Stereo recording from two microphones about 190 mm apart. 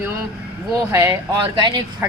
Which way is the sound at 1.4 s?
25° right (ahead or behind).